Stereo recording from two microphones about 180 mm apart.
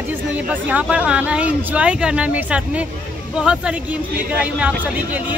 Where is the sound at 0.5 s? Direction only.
10° right (ahead or behind).